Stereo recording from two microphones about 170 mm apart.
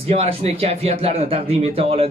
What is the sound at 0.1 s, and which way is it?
Speech, 35° right (ahead or behind).